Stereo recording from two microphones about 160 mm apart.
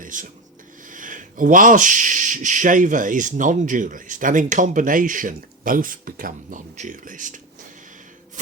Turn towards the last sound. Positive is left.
turn(degrees=-55)  # may be behind; listen again after turning